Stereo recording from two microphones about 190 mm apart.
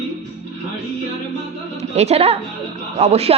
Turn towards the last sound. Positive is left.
turn(degrees=-35)  # may be behind; listen again after turning